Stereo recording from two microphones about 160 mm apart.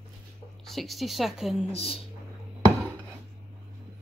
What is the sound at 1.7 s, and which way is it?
Speech, 40° left (ahead or behind).